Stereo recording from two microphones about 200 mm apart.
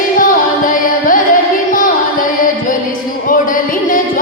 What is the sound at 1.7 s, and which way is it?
Carnatic music, 40° left (ahead or behind).